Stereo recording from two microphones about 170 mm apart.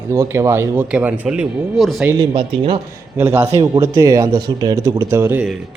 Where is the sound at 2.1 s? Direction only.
25° right (ahead or behind).